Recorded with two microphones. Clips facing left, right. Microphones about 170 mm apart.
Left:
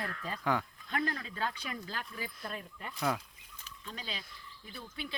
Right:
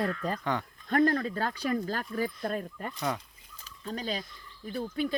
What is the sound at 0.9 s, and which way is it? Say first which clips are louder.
Speech: right 11 dB; 45° right (ahead or behind).